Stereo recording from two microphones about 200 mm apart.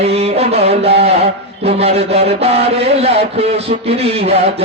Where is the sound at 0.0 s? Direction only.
30° right (ahead or behind).